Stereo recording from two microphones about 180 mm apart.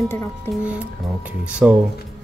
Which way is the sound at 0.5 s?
5° right (ahead or behind).